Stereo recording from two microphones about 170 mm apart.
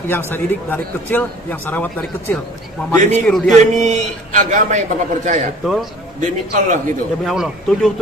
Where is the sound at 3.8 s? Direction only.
45° right (ahead or behind).